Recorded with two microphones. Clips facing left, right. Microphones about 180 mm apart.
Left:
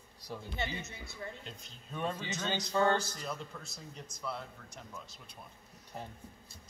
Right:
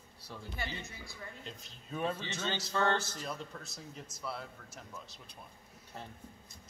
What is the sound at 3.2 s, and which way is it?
A man's voice, centre (ahead or behind).